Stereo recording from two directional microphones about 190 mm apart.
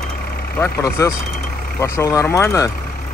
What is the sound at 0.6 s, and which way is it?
Speech, 15° left (ahead or behind).